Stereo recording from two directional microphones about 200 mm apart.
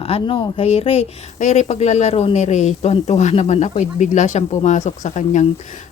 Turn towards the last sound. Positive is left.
turn(degrees=35)  # may be behind; listen again after turning